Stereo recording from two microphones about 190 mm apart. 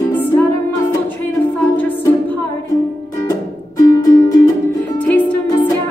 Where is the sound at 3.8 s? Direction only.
20° left (ahead or behind).